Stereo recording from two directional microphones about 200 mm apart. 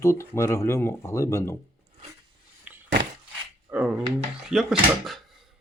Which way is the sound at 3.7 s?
5° right (ahead or behind).